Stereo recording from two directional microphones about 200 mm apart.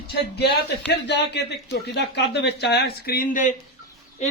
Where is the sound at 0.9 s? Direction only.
55° left (ahead or behind).